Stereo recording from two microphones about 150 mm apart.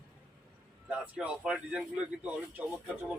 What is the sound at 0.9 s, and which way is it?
Speech, 10° right (ahead or behind).